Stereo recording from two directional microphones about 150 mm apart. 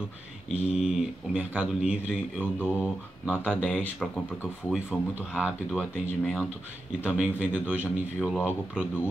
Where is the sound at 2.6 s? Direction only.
15° left (ahead or behind).